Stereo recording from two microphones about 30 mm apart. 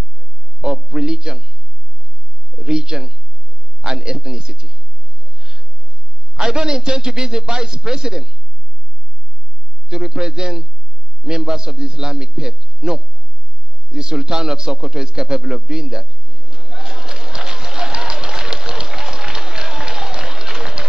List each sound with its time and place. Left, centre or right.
0.6 s a man's voice: right
2.5 s a man's voice: right
9.8 s a man's voice: right
13.8 s a sound: right
18.3 s run: right